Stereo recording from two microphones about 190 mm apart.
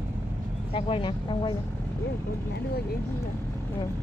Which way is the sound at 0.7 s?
30° left (ahead or behind).